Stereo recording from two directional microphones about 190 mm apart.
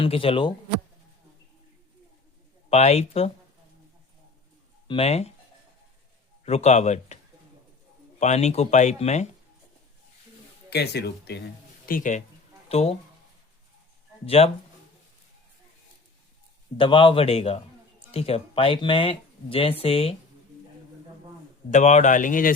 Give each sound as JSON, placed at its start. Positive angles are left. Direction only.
{"t": 0.0, "sound": "speech", "side_deg": 30}
{"t": 2.6, "sound": "speech", "side_deg": 35}
{"t": 4.9, "sound": "speech", "side_deg": 30}
{"t": 6.4, "sound": "speech", "side_deg": 35}
{"t": 8.2, "sound": "speech", "side_deg": 35}
{"t": 10.7, "sound": "speech", "side_deg": 60}
{"t": 11.9, "sound": "speech", "side_deg": 45}
{"t": 12.6, "sound": "speech", "side_deg": 35}
{"t": 14.3, "sound": "speech", "side_deg": 35}
{"t": 16.7, "sound": "speech", "side_deg": 25}
{"t": 21.7, "sound": "speech", "side_deg": 40}